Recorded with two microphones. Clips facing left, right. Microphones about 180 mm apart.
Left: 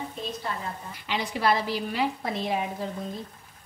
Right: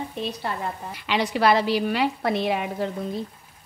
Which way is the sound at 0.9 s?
80° right.